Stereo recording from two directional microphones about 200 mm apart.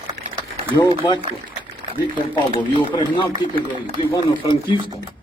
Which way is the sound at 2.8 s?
25° left (ahead or behind).